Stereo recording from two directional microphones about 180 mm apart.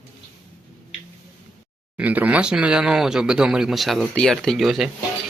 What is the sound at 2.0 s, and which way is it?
Speech, 10° right (ahead or behind).